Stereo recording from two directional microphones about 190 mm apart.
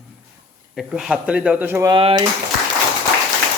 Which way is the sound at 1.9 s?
25° right (ahead or behind).